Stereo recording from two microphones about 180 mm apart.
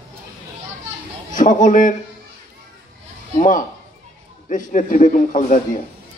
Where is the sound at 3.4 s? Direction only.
45° left (ahead or behind).